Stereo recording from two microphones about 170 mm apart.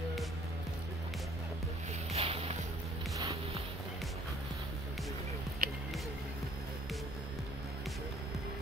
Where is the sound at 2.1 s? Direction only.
35° right (ahead or behind).